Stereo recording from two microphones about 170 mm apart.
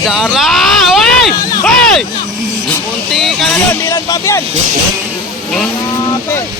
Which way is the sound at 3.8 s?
20° left (ahead or behind).